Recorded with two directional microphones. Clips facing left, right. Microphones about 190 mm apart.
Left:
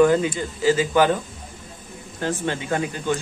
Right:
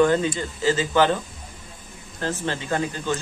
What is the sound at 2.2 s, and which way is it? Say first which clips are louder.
Speech: left 2 dB; 15° left (ahead or behind).